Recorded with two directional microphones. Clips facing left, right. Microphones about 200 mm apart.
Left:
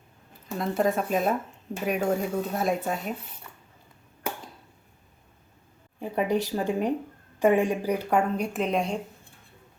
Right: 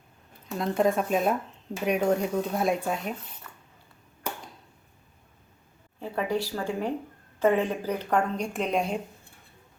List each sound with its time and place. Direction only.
0.5 s speech: centre (ahead or behind)
6.0 s speech: 15° left (ahead or behind); by 9.0 s centre (ahead or behind)